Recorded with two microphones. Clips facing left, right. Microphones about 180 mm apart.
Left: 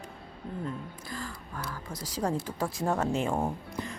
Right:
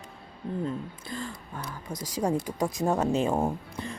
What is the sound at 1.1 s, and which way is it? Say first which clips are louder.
Speech: right 3 dB; 25° right (ahead or behind).